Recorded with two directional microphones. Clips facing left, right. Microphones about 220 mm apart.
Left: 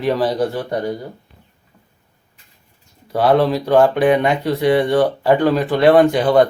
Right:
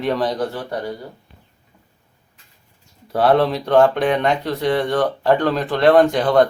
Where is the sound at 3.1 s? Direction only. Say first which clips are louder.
Left 1 dB; centre (ahead or behind).